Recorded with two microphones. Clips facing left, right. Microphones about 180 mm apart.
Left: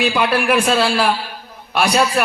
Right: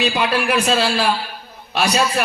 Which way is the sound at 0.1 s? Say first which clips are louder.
Left 2 dB; 50° left (ahead or behind).